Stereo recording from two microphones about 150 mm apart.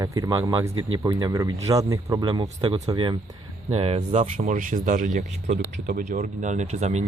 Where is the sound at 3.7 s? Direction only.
45° right (ahead or behind).